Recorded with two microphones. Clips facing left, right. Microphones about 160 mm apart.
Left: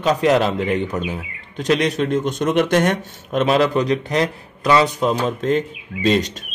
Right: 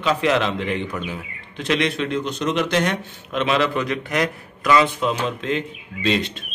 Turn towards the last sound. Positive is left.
turn(degrees=45)  # may be behind; listen again after turning